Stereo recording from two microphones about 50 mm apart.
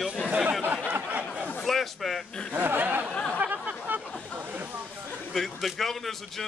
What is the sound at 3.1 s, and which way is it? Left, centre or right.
Speech, centre.